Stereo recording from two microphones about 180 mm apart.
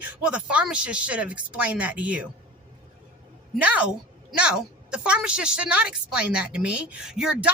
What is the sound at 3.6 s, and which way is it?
A woman's voice, 5° right (ahead or behind).